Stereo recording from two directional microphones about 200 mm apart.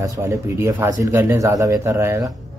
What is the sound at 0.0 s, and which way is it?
Speech, 15° right (ahead or behind).